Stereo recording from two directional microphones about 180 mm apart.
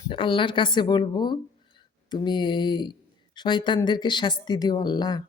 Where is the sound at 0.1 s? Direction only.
25° left (ahead or behind).